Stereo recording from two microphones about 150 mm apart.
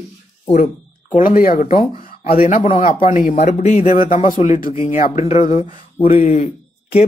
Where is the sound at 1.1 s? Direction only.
65° left (ahead or behind).